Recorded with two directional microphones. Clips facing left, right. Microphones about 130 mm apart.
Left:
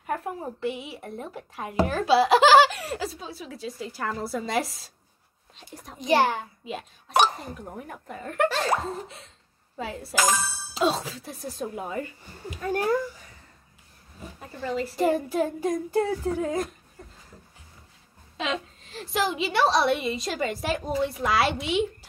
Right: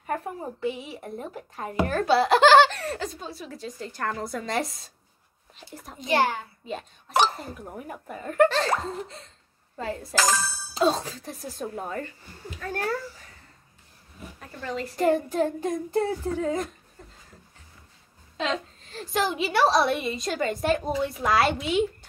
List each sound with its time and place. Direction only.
0.0 s a woman's voice: centre (ahead or behind)
5.9 s a child's voice: 20° left (ahead or behind)
6.6 s a woman's voice: 5° left (ahead or behind)
8.5 s child singing: 10° left (ahead or behind)
9.0 s a woman's voice: 5° left (ahead or behind)
10.1 s a child's voice: 20° left (ahead or behind)
10.4 s a woman's voice: centre (ahead or behind)
12.6 s child singing: 15° left (ahead or behind)
14.7 s child singing: 5° left (ahead or behind)
18.4 s a woman's voice: centre (ahead or behind)